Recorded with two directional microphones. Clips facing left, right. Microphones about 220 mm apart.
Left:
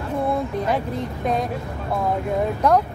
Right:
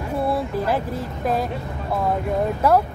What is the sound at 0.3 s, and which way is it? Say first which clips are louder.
Speech: even; 5° right (ahead or behind).